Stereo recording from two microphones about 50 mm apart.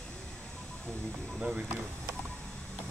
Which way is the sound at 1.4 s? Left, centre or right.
Centre.